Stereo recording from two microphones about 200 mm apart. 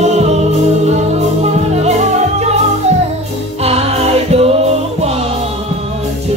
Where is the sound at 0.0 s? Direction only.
35° right (ahead or behind).